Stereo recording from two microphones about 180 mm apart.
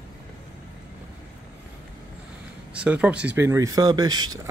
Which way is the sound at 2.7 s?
5° right (ahead or behind).